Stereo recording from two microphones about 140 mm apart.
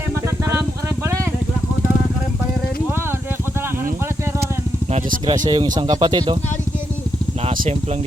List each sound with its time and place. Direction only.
1.0 s vehicle: 20° right (ahead or behind)
4.9 s a sound: 45° right (ahead or behind)
5.5 s speech: 30° right (ahead or behind)
7.4 s vehicle: 50° right (ahead or behind)